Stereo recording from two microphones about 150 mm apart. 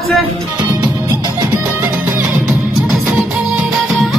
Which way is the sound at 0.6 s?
30° right (ahead or behind).